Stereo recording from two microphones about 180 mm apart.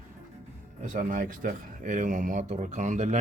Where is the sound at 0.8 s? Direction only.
45° right (ahead or behind).